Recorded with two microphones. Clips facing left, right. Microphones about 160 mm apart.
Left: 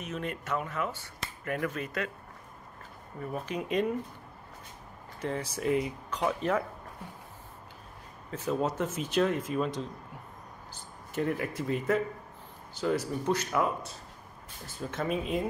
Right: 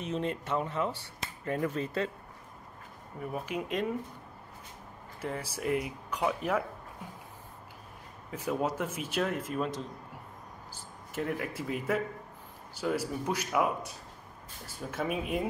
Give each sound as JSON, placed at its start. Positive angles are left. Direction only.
{"t": 0.0, "sound": "speech", "side_deg": -25}
{"t": 3.2, "sound": "speech", "side_deg": -10}
{"t": 5.2, "sound": "speech", "side_deg": -5}
{"t": 8.3, "sound": "speech", "side_deg": -10}
{"t": 11.1, "sound": "speech", "side_deg": 0}